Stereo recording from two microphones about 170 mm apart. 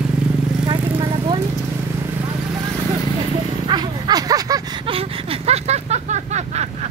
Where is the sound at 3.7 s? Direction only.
25° right (ahead or behind).